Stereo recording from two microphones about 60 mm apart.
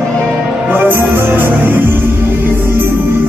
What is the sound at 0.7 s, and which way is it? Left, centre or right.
Music, right.